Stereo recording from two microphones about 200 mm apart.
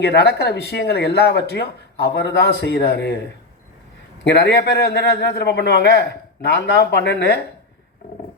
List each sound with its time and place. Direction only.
0.0 s speech: 55° left (ahead or behind)
4.2 s speech: 60° left (ahead or behind)